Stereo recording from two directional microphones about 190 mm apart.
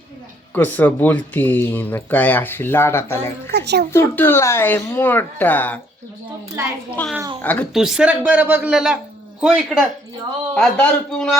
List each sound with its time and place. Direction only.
0.5 s speech: 10° left (ahead or behind)
3.5 s a child's voice: 60° right (ahead or behind)
3.9 s speech: 10° left (ahead or behind)
7.0 s speech: 10° left (ahead or behind)
7.7 s a man's voice: 5° right (ahead or behind)